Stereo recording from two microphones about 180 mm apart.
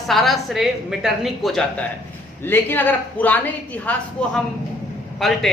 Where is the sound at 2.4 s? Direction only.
10° left (ahead or behind).